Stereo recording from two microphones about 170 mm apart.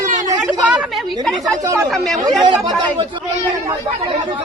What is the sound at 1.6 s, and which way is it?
Speech, 15° right (ahead or behind).